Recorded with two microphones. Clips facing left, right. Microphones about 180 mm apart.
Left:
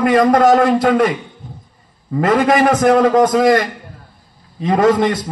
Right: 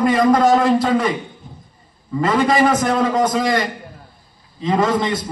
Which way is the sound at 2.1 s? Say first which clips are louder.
Left 3 dB; 55° left (ahead or behind).